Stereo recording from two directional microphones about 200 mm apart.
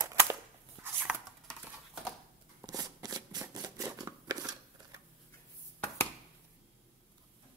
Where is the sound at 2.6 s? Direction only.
20° right (ahead or behind).